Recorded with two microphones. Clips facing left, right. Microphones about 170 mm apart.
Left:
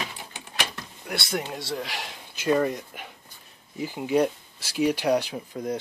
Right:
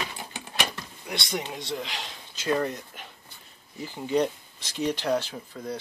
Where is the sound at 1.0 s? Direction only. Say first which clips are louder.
Left 2 dB; 5° left (ahead or behind).